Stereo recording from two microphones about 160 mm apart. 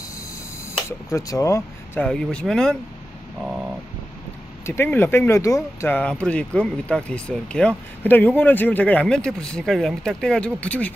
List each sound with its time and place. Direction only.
0.8 s speech: 20° left (ahead or behind)
2.0 s speech: 5° left (ahead or behind)
4.6 s speech: 15° left (ahead or behind)